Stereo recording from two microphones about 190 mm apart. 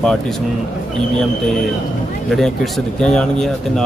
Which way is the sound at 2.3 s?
Centre (ahead or behind).